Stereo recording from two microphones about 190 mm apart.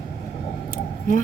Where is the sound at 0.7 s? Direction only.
45° left (ahead or behind).